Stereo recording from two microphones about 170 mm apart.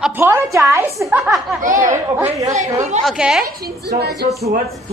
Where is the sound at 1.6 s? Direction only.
50° right (ahead or behind).